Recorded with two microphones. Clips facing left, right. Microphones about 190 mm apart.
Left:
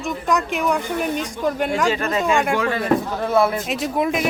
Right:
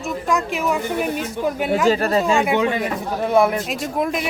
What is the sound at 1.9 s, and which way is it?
Speech, 35° right (ahead or behind).